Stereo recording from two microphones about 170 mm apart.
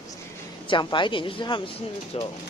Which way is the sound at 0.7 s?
30° left (ahead or behind).